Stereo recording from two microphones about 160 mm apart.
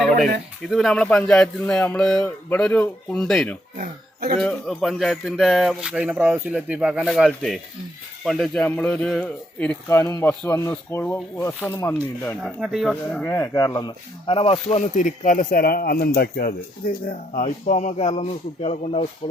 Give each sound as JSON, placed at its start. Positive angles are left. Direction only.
{"t": 0.7, "sound": "speech", "side_deg": 0}
{"t": 3.8, "sound": "speech", "side_deg": -60}
{"t": 4.4, "sound": "a man's voice", "side_deg": 0}
{"t": 12.4, "sound": "speech", "side_deg": -5}
{"t": 13.2, "sound": "speech", "side_deg": 15}
{"t": 14.3, "sound": "speech", "side_deg": 35}
{"t": 17.3, "sound": "speech", "side_deg": 45}